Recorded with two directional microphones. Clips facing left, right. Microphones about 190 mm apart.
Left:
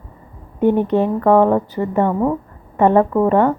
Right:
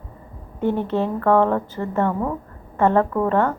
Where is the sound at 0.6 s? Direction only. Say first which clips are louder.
Left 6 dB; 15° left (ahead or behind).